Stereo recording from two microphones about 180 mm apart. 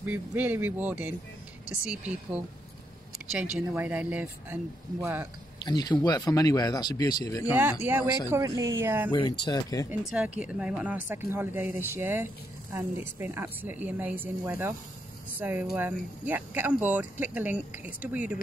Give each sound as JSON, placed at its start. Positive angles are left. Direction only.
{"t": 0.0, "sound": "speech", "side_deg": -10}
{"t": 5.7, "sound": "speech", "side_deg": 25}
{"t": 7.8, "sound": "speech", "side_deg": -10}
{"t": 9.4, "sound": "speech", "side_deg": 20}
{"t": 9.8, "sound": "speech", "side_deg": -5}